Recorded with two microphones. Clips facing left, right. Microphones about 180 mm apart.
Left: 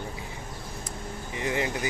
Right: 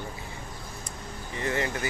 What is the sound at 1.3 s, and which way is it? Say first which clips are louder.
Speech: even; 15° left (ahead or behind).